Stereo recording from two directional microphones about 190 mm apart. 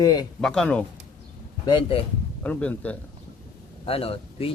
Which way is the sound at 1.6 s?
25° left (ahead or behind).